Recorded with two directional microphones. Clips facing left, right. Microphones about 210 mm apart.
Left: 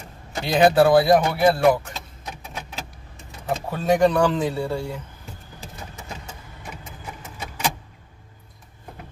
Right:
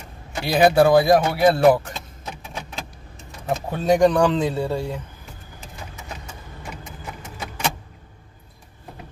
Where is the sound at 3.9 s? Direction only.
15° right (ahead or behind).